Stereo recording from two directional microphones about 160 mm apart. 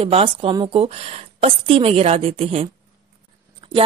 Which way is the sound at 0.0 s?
35° right (ahead or behind).